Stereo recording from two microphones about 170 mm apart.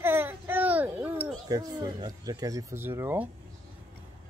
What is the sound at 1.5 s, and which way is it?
Speech, 25° right (ahead or behind).